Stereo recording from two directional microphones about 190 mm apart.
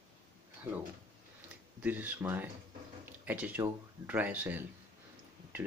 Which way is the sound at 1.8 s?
10° right (ahead or behind).